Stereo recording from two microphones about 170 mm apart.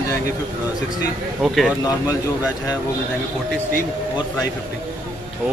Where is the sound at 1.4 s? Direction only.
Centre (ahead or behind).